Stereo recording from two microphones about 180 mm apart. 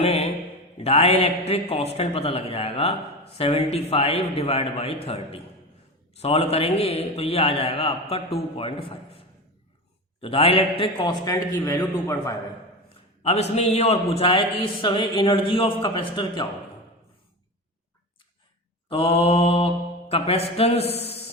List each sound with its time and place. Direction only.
0.0 s mantra: 35° left (ahead or behind)
0.8 s a man's voice: 35° left (ahead or behind); by 12.3 s 15° left (ahead or behind)
13.2 s a man's voice: 35° left (ahead or behind)
18.9 s mantra: 30° left (ahead or behind)